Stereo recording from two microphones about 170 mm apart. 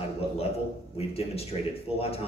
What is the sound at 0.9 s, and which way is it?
A man's voice, 35° left (ahead or behind).